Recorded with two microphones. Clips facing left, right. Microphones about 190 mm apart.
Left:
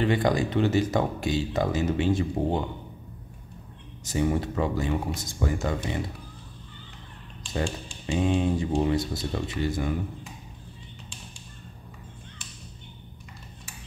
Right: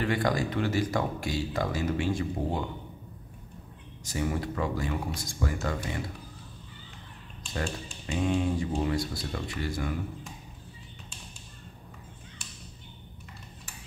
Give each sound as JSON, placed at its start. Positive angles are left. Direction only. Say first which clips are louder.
{"t": 0.0, "sound": "speech", "louder": "left 4 dB", "side_deg": 25}
{"t": 4.0, "sound": "speech", "louder": "left 5 dB", "side_deg": 20}
{"t": 8.1, "sound": "speech", "louder": "left 3 dB", "side_deg": 20}